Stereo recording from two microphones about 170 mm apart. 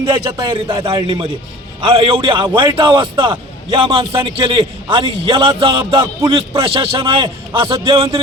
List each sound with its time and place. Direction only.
0.1 s a man's voice: 25° right (ahead or behind)